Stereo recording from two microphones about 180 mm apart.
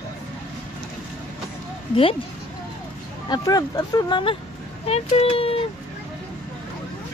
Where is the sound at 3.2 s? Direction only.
20° left (ahead or behind).